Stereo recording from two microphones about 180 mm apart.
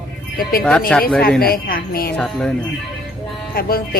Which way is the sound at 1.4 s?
55° left (ahead or behind).